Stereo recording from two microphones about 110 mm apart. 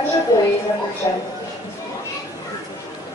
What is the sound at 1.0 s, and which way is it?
Speech, 35° left (ahead or behind).